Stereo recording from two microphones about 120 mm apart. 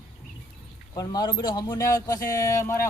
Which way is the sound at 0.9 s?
35° left (ahead or behind).